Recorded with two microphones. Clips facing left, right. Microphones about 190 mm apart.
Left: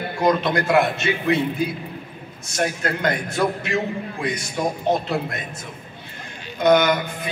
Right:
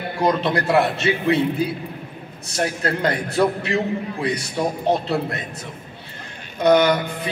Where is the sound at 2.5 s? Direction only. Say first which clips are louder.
Right 1 dB; 35° right (ahead or behind).